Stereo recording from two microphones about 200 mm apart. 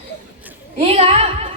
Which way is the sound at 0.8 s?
30° right (ahead or behind).